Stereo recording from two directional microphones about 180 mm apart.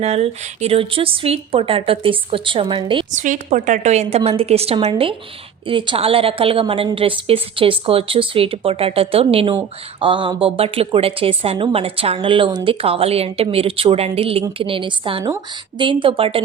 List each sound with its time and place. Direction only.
0.0 s a woman's voice: 35° right (ahead or behind)
3.1 s a woman's voice: 45° right (ahead or behind)